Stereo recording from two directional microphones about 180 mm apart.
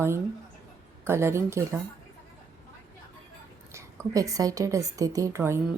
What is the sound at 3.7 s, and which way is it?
A woman's voice, 15° right (ahead or behind).